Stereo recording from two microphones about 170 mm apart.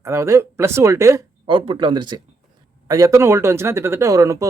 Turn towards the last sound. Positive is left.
turn(degrees=-20)  # may be behind; listen again after turning